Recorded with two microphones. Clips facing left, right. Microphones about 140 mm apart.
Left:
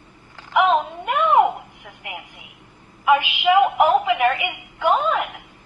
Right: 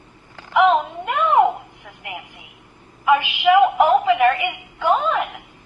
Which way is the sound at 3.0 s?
15° left (ahead or behind).